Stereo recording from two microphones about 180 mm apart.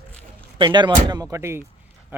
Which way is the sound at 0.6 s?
25° right (ahead or behind).